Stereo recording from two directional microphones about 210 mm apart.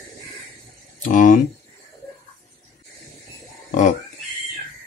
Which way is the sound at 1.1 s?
40° left (ahead or behind).